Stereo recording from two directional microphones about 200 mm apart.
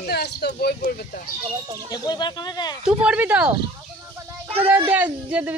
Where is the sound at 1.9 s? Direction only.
20° left (ahead or behind).